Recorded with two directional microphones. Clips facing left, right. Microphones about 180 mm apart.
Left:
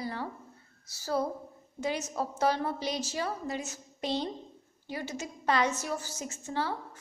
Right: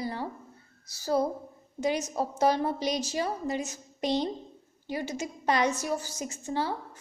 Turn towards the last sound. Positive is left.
turn(degrees=-15)  # may be behind; listen again after turning